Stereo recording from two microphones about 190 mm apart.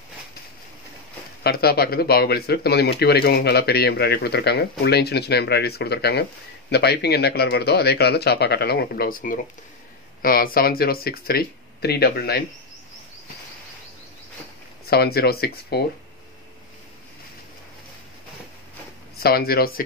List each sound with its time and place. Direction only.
1.4 s speech: 55° left (ahead or behind)
14.9 s speech: 55° left (ahead or behind)
19.1 s speech: 55° left (ahead or behind)